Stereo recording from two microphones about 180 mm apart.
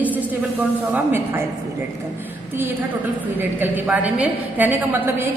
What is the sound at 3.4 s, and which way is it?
A woman's voice, 10° right (ahead or behind).